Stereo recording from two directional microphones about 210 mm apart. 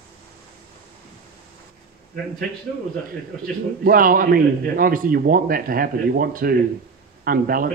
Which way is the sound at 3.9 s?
40° right (ahead or behind).